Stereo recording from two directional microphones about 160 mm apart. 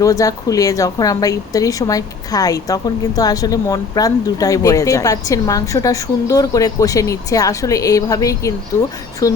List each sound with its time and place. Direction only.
0.0 s a woman's voice: 20° left (ahead or behind)